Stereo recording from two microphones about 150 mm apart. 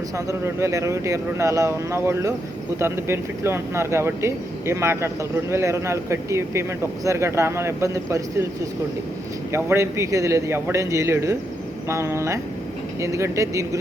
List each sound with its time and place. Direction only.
0.3 s speech: 20° right (ahead or behind)
9.5 s speech: 15° right (ahead or behind)